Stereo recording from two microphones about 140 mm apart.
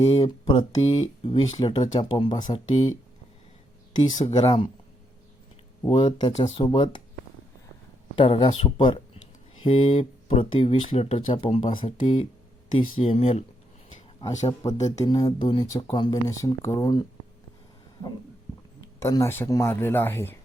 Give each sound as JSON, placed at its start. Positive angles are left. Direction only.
{"t": 0.0, "sound": "speech", "side_deg": 50}
{"t": 0.3, "sound": "speech", "side_deg": 30}
{"t": 0.8, "sound": "speech", "side_deg": 50}
{"t": 1.4, "sound": "speech", "side_deg": 35}
{"t": 4.2, "sound": "speech", "side_deg": 50}
{"t": 5.9, "sound": "speech", "side_deg": 45}
{"t": 6.3, "sound": "speech", "side_deg": 50}
{"t": 6.6, "sound": "speech", "side_deg": 35}
{"t": 8.1, "sound": "speech", "side_deg": 35}
{"t": 14.2, "sound": "speech", "side_deg": 30}
{"t": 18.9, "sound": "speech", "side_deg": 20}